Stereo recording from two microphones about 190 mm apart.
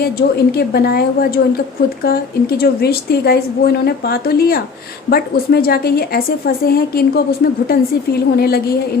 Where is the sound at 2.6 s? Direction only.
55° left (ahead or behind).